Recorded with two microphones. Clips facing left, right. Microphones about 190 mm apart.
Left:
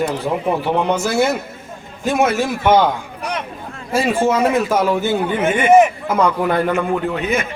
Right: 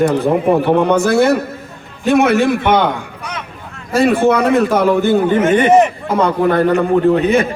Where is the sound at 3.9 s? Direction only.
60° right (ahead or behind).